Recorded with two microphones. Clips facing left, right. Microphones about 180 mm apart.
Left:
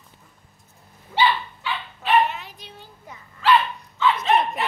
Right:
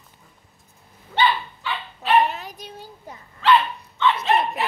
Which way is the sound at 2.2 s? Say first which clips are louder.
Right 2 dB; 40° right (ahead or behind).